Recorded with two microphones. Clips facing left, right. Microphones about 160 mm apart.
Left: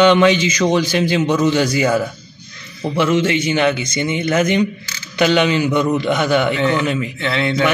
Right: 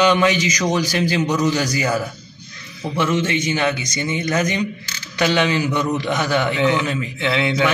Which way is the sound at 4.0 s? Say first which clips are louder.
Left 4 dB; 25° left (ahead or behind).